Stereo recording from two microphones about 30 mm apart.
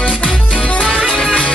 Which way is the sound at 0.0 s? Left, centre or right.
Left.